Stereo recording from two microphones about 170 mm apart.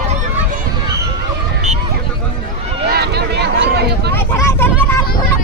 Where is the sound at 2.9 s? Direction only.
70° right (ahead or behind).